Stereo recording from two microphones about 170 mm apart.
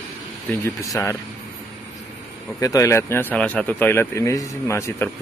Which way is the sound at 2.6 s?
20° left (ahead or behind).